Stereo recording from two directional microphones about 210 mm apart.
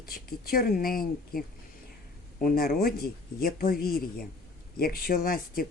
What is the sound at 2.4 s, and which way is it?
Speech, 45° left (ahead or behind).